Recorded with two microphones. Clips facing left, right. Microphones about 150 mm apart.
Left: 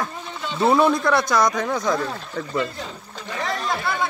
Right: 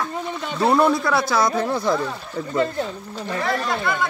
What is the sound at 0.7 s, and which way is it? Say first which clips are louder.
Speech: even; 5° right (ahead or behind).